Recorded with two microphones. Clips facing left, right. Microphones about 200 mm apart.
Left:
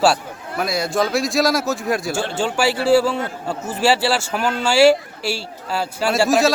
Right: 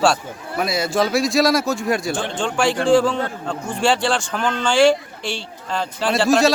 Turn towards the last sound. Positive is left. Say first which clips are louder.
# even
turn(degrees=0)  # may be behind; listen again after turning